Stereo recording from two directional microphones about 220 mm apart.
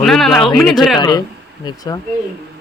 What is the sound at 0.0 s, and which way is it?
Speech, centre (ahead or behind).